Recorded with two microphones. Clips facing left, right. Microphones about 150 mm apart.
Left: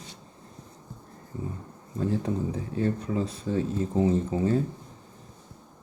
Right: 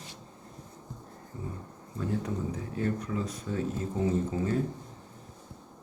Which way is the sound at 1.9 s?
30° left (ahead or behind).